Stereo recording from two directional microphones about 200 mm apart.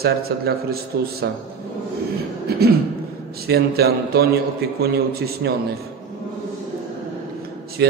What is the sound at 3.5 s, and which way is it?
A man's voice, 50° right (ahead or behind).